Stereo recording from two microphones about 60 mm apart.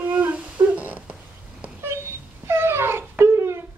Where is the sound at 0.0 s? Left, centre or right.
Right.